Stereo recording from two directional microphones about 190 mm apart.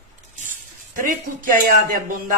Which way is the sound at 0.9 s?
45° right (ahead or behind).